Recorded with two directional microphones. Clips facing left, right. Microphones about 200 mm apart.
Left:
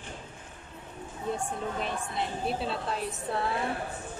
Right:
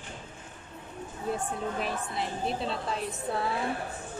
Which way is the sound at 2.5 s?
5° left (ahead or behind).